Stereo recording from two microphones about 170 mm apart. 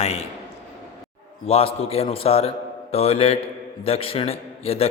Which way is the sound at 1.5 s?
35° left (ahead or behind).